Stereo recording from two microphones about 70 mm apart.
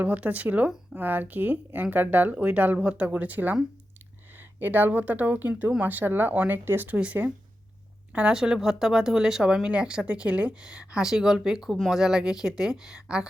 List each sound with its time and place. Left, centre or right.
0.0 s speech: right